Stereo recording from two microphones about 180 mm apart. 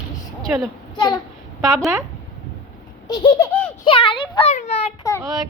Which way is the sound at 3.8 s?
30° left (ahead or behind).